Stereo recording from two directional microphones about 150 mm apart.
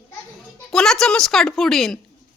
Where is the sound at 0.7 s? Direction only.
5° left (ahead or behind).